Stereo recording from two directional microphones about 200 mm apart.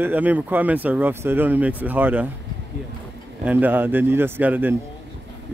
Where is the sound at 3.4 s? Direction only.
10° right (ahead or behind).